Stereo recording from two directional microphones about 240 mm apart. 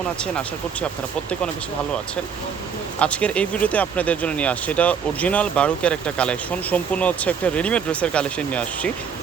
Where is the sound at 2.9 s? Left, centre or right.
Centre.